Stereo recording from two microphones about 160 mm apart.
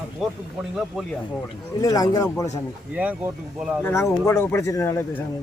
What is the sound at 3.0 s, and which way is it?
Speech, 10° right (ahead or behind).